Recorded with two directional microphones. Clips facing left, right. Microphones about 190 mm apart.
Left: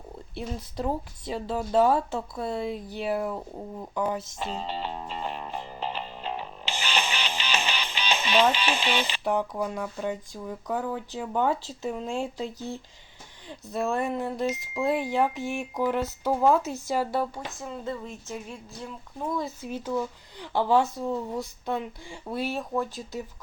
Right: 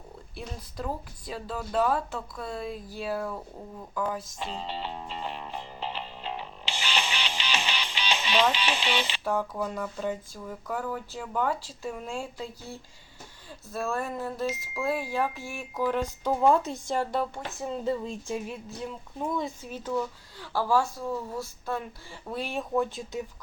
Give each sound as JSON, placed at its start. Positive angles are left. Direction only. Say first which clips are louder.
{"t": 0.3, "sound": "speech", "louder": "left 5 dB", "side_deg": 25}
{"t": 4.4, "sound": "music", "louder": "left 3 dB", "side_deg": 45}
{"t": 8.5, "sound": "speech", "louder": "left 2 dB", "side_deg": 45}
{"t": 9.2, "sound": "speech", "louder": "left 3 dB", "side_deg": 15}
{"t": 16.2, "sound": "speech", "louder": "left 1 dB", "side_deg": 0}
{"t": 17.6, "sound": "speech", "louder": "right 6 dB", "side_deg": -15}
{"t": 19.2, "sound": "speech", "louder": "even", "side_deg": 0}
{"t": 19.6, "sound": "speech", "louder": "left 1 dB", "side_deg": 10}